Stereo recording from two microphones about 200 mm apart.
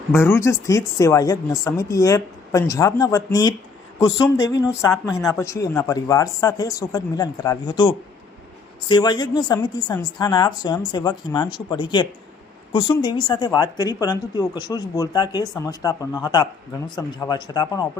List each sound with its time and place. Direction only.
0.1 s a woman's voice: 10° left (ahead or behind)